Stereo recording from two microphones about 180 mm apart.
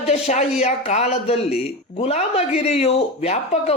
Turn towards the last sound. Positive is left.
turn(degrees=35)  # may be behind; listen again after turning